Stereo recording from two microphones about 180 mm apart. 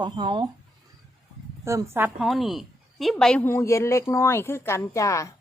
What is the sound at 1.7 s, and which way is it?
A woman's voice, 15° right (ahead or behind).